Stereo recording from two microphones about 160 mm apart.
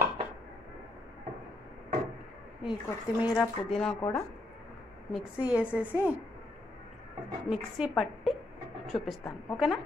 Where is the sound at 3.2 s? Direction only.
5° right (ahead or behind).